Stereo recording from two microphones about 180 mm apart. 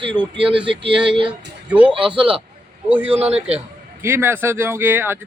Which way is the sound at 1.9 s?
30° right (ahead or behind).